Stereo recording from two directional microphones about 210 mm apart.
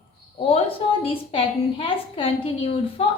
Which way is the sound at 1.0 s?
25° left (ahead or behind).